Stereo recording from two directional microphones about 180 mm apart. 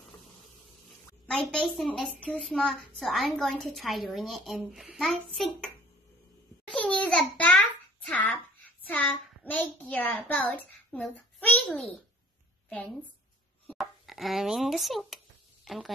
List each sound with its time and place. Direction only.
1.2 s a child's voice: 5° left (ahead or behind)
6.7 s babbling: 5° left (ahead or behind)
12.6 s a woman's voice: 5° left (ahead or behind)
15.6 s a sound: centre (ahead or behind)